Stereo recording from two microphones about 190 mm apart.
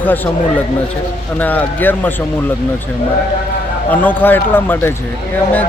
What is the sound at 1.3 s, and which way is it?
Speech, 10° left (ahead or behind).